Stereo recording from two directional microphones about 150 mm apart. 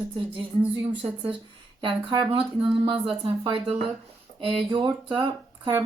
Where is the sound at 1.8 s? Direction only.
35° right (ahead or behind).